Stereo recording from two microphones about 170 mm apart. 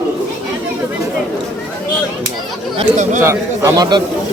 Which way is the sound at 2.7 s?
45° right (ahead or behind).